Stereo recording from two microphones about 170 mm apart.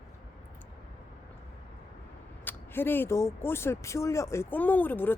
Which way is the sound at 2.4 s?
10° left (ahead or behind).